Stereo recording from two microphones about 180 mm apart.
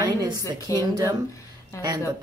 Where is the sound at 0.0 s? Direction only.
20° right (ahead or behind).